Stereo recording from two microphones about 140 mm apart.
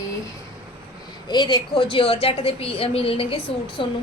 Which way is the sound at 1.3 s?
35° left (ahead or behind).